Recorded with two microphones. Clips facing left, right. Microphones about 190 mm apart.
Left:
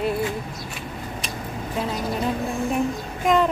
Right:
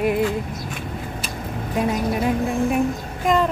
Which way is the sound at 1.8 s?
15° right (ahead or behind).